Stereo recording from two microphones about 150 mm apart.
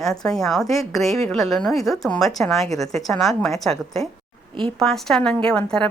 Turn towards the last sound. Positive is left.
turn(degrees=5)  # may be behind; listen again after turning